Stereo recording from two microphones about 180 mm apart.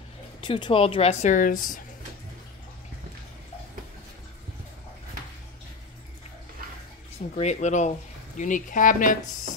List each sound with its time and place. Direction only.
0.4 s speech: 25° left (ahead or behind); by 1.9 s 45° left (ahead or behind)
7.3 s speech: 40° left (ahead or behind)